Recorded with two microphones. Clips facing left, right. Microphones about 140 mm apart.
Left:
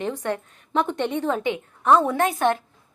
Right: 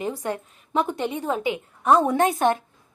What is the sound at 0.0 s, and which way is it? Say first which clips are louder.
A woman's voice: left 1 dB; 10° right (ahead or behind).